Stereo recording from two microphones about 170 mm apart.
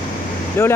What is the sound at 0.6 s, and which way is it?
Speech, 15° left (ahead or behind).